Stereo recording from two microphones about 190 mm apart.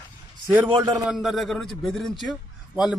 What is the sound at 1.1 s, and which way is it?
A man's voice, centre (ahead or behind).